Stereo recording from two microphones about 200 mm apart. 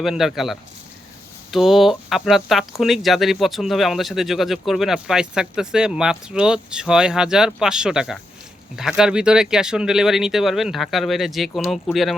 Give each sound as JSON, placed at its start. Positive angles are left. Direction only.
{"t": 0.0, "sound": "speech", "side_deg": 0}